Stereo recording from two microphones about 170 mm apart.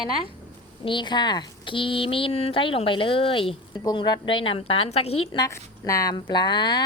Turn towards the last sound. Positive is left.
turn(degrees=25)  # may be behind; listen again after turning